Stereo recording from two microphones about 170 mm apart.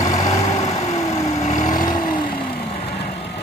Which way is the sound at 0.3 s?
40° left (ahead or behind).